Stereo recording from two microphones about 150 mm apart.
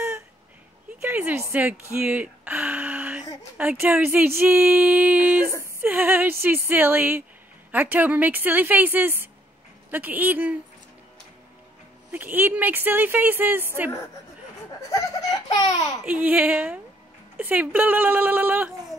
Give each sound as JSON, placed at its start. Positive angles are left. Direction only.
{"t": 1.0, "sound": "speech", "side_deg": -10}
{"t": 12.1, "sound": "speech", "side_deg": -10}
{"t": 14.9, "sound": "laughter", "side_deg": 25}
{"t": 16.1, "sound": "speech", "side_deg": -10}